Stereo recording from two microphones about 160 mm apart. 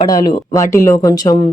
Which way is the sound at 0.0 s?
25° left (ahead or behind).